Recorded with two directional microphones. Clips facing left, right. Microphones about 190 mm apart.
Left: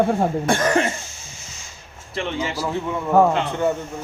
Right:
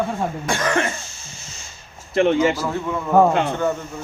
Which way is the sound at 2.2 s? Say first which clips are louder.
Right 9 dB; 50° right (ahead or behind).